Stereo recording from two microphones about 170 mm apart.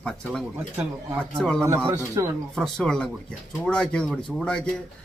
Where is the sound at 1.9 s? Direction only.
15° right (ahead or behind).